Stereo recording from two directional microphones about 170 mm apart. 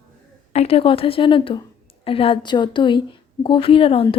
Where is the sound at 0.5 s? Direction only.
35° left (ahead or behind).